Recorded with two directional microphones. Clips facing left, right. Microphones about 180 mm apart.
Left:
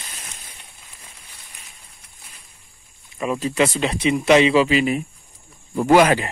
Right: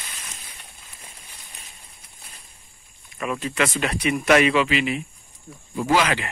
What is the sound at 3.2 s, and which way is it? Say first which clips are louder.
Speech: left 4 dB; 30° left (ahead or behind).